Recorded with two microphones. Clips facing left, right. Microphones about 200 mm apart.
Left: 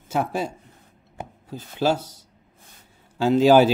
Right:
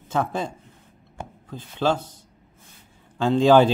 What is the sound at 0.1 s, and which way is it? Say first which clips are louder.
Speech: left 1 dB; 10° left (ahead or behind).